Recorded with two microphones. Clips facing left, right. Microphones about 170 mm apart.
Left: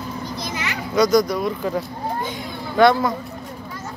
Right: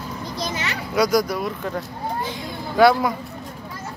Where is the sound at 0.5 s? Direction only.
30° right (ahead or behind).